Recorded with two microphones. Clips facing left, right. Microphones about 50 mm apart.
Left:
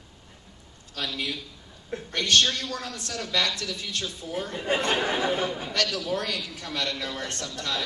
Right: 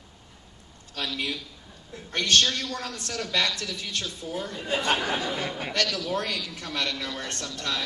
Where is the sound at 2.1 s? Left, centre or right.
Right.